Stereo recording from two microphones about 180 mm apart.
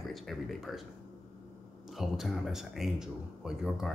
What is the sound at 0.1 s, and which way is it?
Speech, centre (ahead or behind).